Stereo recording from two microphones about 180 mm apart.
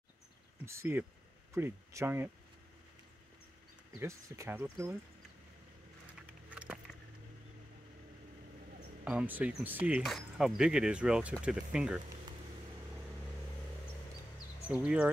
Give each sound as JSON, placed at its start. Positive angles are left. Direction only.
{"t": 0.7, "sound": "speech", "side_deg": -15}
{"t": 4.0, "sound": "speech", "side_deg": -15}
{"t": 6.5, "sound": "a sound", "side_deg": -10}
{"t": 9.0, "sound": "speech", "side_deg": -10}
{"t": 14.7, "sound": "speech", "side_deg": -5}